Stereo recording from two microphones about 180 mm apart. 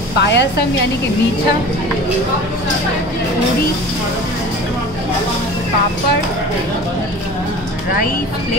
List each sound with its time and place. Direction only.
0.2 s a woman's voice: 75° left (ahead or behind)